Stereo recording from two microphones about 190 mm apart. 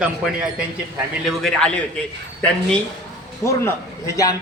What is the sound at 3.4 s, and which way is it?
Speech, 15° left (ahead or behind).